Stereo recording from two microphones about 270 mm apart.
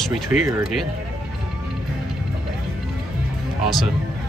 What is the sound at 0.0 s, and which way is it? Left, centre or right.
Speech, centre.